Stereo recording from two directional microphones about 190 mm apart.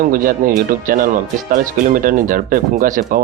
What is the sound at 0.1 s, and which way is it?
Speech, 50° right (ahead or behind).